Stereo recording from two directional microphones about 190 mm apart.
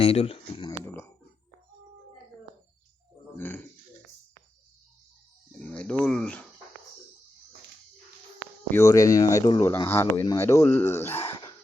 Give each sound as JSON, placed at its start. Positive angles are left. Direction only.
{"t": 0.0, "sound": "speech", "side_deg": 30}
{"t": 3.3, "sound": "burping", "side_deg": 10}
{"t": 5.5, "sound": "cricket", "side_deg": 5}
{"t": 8.7, "sound": "speech", "side_deg": 15}
{"t": 11.2, "sound": "a sound", "side_deg": 25}